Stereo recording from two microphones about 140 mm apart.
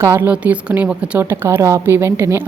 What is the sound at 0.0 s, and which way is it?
A woman's voice, 15° right (ahead or behind).